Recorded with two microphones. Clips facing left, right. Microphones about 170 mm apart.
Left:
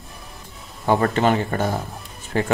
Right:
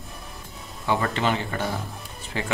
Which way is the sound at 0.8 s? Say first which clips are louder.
Left 6 dB; 45° left (ahead or behind).